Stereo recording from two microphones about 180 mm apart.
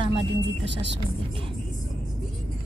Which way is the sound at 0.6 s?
75° right (ahead or behind).